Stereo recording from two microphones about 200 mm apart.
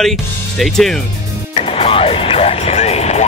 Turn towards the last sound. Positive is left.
turn(degrees=30)  # may be behind; listen again after turning